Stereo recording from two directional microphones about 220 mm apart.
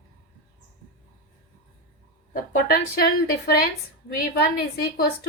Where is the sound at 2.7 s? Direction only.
45° left (ahead or behind).